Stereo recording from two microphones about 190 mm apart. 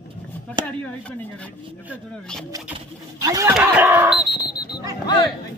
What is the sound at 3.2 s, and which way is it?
Speech, 15° right (ahead or behind).